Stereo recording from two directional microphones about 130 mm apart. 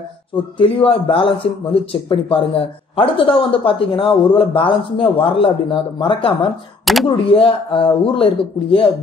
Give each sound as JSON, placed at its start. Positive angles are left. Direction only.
{"t": 0.6, "sound": "a man's voice", "side_deg": 45}